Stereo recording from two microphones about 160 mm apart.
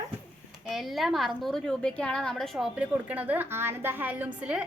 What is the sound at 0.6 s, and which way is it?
A woman's voice, centre (ahead or behind).